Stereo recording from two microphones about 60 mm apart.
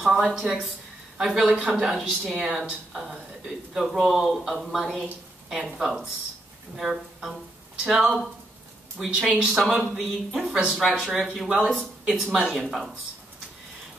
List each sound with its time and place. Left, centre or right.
0.0 s a woman's voice: centre